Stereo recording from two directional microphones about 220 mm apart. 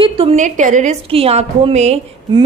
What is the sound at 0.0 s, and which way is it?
A woman's voice, 25° right (ahead or behind).